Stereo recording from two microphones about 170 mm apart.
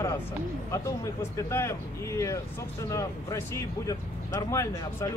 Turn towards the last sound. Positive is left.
turn(degrees=15)  # may be behind; listen again after turning